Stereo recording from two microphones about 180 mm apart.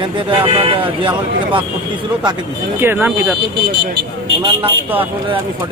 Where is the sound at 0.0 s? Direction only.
30° right (ahead or behind).